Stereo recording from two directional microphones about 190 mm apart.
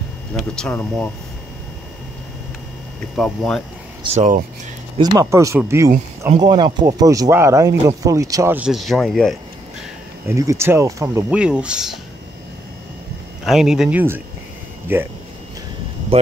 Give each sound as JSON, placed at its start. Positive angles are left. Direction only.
{"t": 0.3, "sound": "speech", "side_deg": 5}
{"t": 3.2, "sound": "speech", "side_deg": 5}
{"t": 4.0, "sound": "speech", "side_deg": -35}
{"t": 4.9, "sound": "speech", "side_deg": -20}
{"t": 10.2, "sound": "speech", "side_deg": -15}
{"t": 13.5, "sound": "speech", "side_deg": 0}
{"t": 16.1, "sound": "speech", "side_deg": -30}